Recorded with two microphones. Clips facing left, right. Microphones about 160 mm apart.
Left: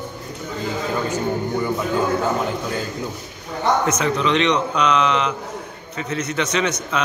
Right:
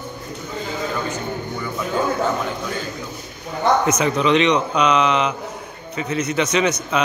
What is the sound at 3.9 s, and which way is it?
A man's voice, 5° right (ahead or behind).